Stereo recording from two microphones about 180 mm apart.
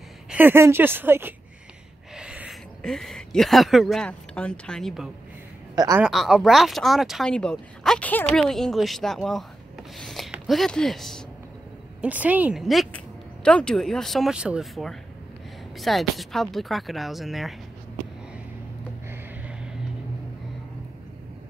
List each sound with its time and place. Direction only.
0.3 s speech: 10° right (ahead or behind)
5.8 s speech: 20° right (ahead or behind)
6.0 s speech: centre (ahead or behind)